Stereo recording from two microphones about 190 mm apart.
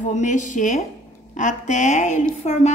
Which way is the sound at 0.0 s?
40° left (ahead or behind).